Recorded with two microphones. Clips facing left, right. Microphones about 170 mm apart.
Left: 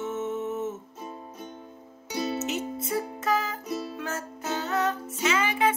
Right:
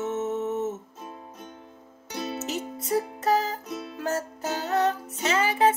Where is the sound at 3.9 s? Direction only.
40° right (ahead or behind).